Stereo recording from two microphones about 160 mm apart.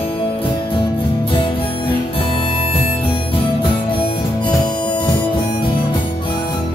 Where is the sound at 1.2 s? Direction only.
35° left (ahead or behind).